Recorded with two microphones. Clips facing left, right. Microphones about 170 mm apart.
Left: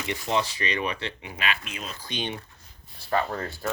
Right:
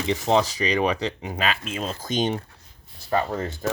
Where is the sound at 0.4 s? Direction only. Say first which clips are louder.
Right 7 dB; 40° right (ahead or behind).